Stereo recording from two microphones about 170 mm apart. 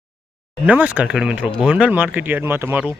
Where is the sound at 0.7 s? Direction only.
10° right (ahead or behind).